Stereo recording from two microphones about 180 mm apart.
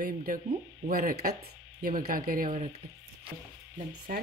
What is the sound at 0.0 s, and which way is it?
Speech, 50° right (ahead or behind).